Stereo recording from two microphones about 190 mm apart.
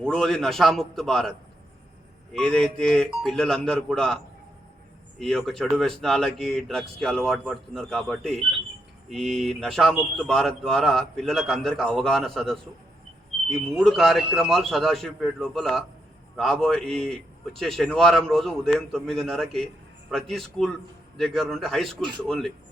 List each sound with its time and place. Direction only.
0.0 s a man's voice: centre (ahead or behind)
5.2 s a man's voice: centre (ahead or behind)